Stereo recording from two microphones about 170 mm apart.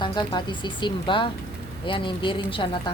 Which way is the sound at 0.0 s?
25° left (ahead or behind).